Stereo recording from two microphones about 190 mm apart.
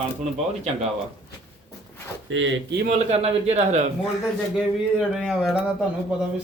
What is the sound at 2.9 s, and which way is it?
Speech, 35° right (ahead or behind).